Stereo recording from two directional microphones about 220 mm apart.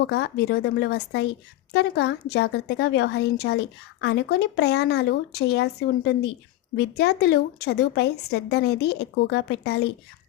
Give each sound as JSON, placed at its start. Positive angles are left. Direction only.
{"t": 0.1, "sound": "speech", "side_deg": 50}
{"t": 6.7, "sound": "speech", "side_deg": 50}